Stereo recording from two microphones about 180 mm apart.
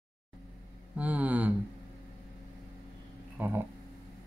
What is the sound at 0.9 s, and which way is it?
Hum, 10° right (ahead or behind).